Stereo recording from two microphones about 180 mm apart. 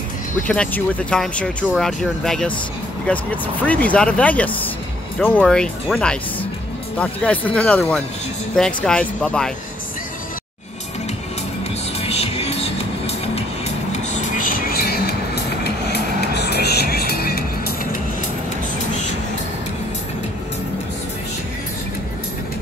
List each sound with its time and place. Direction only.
0.5 s speech: 10° left (ahead or behind)
12.0 s music: 35° left (ahead or behind)
14.3 s music: 50° left (ahead or behind)